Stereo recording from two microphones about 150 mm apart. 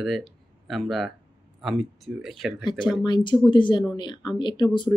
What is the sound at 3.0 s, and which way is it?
Speech, 30° left (ahead or behind).